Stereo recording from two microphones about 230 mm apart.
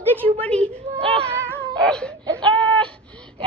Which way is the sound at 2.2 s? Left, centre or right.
Centre.